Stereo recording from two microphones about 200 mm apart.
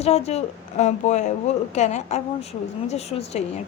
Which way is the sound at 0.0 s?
30° left (ahead or behind).